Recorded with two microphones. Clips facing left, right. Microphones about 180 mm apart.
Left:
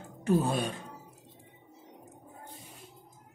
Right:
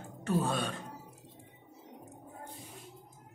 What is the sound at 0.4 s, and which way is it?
Speech, 20° left (ahead or behind).